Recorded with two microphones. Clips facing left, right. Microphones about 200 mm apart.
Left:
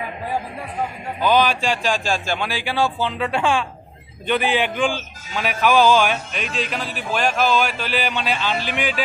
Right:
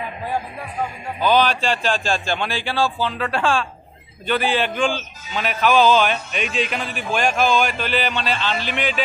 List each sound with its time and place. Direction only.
1.2 s speech: 10° left (ahead or behind)
6.5 s speech: centre (ahead or behind)